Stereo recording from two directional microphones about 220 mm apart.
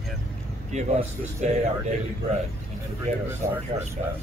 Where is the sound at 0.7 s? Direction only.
30° right (ahead or behind).